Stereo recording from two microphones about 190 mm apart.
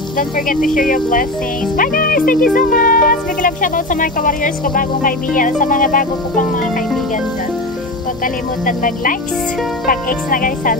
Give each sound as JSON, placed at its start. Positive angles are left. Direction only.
{"t": 0.7, "sound": "speech", "side_deg": 45}
{"t": 8.6, "sound": "speech", "side_deg": 45}